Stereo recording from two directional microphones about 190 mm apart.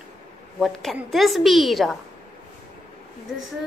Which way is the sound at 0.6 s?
Centre (ahead or behind).